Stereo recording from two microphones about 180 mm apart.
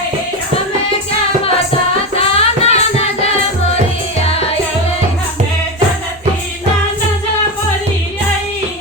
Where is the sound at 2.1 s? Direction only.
35° left (ahead or behind).